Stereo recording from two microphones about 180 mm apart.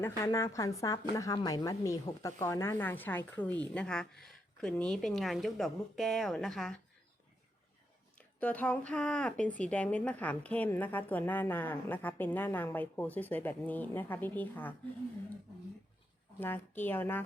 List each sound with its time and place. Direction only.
0.0 s a woman's voice: 15° left (ahead or behind)
8.4 s a woman's voice: 10° left (ahead or behind)
16.4 s a woman's voice: 10° left (ahead or behind)